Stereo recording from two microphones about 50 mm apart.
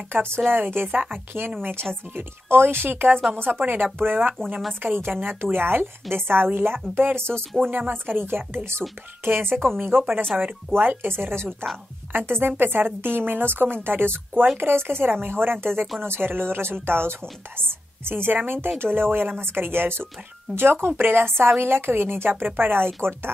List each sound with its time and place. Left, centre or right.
0.1 s a woman's voice: right
7.7 s a woman's voice: right